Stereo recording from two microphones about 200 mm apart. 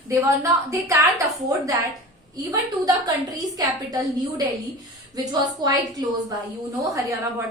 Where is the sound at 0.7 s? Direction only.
15° right (ahead or behind).